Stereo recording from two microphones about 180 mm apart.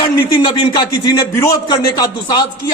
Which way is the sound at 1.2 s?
20° left (ahead or behind).